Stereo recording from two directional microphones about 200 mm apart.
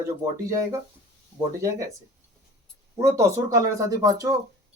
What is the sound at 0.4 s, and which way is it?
Speech, 15° right (ahead or behind).